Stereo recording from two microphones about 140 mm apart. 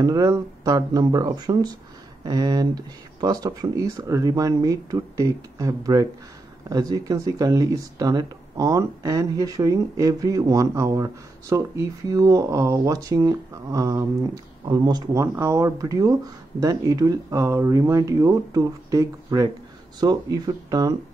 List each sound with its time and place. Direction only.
0.0 s speech: 25° right (ahead or behind)